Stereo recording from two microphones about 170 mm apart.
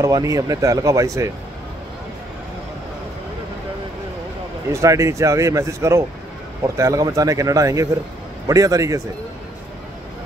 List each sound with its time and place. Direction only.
0.0 s speech: 20° right (ahead or behind)
4.7 s speech: 15° right (ahead or behind)